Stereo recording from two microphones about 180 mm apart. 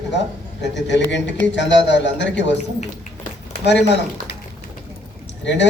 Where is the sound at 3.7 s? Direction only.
75° left (ahead or behind).